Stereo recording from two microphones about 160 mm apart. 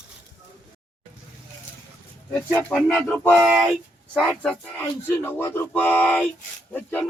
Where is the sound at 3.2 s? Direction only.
10° right (ahead or behind).